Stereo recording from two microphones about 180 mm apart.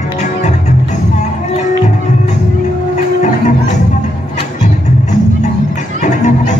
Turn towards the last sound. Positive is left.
turn(degrees=40)  # may be behind; listen again after turning